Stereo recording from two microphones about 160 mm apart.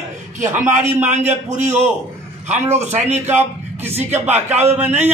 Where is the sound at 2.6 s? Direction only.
15° right (ahead or behind).